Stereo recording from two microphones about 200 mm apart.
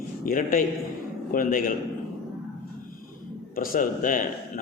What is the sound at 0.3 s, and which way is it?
A man's voice, 45° left (ahead or behind).